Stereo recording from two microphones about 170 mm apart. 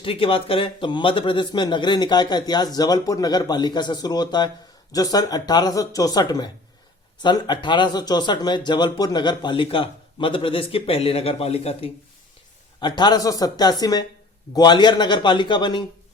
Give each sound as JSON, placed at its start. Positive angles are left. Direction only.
{"t": 0.0, "sound": "a man's voice", "side_deg": 30}
{"t": 12.8, "sound": "a man's voice", "side_deg": 25}